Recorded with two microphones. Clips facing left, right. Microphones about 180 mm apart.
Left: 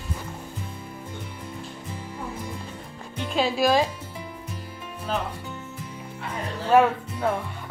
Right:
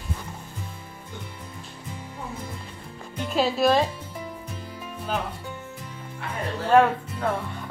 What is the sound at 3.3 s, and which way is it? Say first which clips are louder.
Speech: right 1 dB; centre (ahead or behind).